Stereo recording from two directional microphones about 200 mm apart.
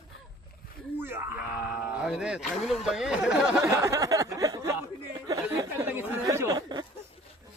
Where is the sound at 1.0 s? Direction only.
10° right (ahead or behind).